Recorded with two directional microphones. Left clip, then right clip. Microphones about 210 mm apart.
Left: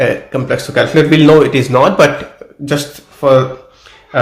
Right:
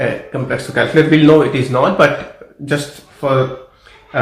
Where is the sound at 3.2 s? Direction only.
50° left (ahead or behind).